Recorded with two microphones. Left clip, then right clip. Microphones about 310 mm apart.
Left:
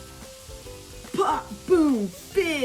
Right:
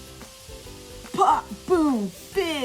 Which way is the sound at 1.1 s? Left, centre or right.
Centre.